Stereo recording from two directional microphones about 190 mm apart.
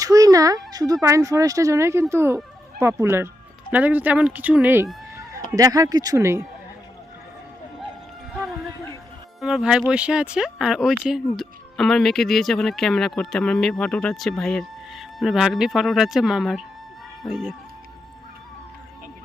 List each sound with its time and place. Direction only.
0.0 s a sound: 20° right (ahead or behind)
1.0 s speech: 15° right (ahead or behind)
9.4 s speech: 5° right (ahead or behind)